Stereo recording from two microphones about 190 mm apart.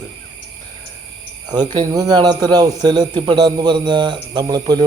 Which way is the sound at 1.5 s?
25° right (ahead or behind).